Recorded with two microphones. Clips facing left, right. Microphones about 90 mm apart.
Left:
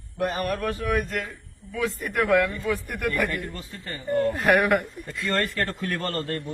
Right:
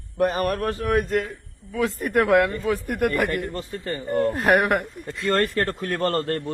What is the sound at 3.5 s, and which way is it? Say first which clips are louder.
Speech: right 7 dB; 45° right (ahead or behind).